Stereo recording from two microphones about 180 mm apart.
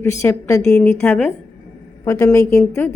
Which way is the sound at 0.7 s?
5° left (ahead or behind).